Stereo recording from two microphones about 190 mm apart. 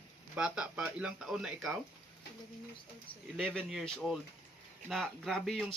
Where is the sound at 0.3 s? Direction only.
5° right (ahead or behind).